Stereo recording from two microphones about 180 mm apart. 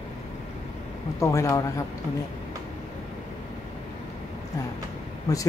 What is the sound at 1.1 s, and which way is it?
Speech, 15° left (ahead or behind).